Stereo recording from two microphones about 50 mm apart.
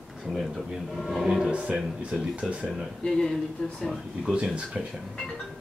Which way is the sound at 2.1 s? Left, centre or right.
Centre.